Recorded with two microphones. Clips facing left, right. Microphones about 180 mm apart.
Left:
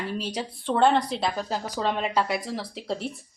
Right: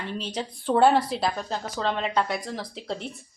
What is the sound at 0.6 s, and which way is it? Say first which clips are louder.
A woman's voice: right 2 dB; 5° right (ahead or behind).